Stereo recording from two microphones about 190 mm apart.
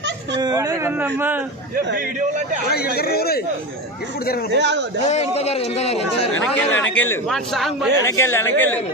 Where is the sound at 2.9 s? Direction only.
55° left (ahead or behind).